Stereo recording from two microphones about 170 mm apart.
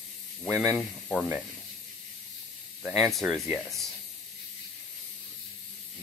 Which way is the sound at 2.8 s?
Centre (ahead or behind).